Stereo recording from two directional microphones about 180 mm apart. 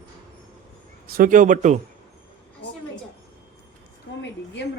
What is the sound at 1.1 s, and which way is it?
Speech, 50° right (ahead or behind).